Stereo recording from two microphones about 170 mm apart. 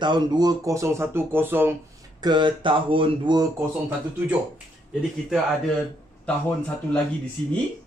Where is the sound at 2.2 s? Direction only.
25° right (ahead or behind).